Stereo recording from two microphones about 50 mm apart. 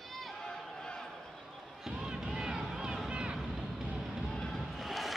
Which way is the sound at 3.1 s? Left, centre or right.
Right.